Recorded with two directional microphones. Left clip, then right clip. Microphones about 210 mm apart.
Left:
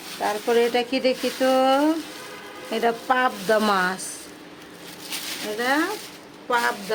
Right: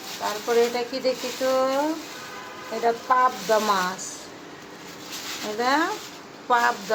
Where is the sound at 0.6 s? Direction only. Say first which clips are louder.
Left 1 dB; 35° left (ahead or behind).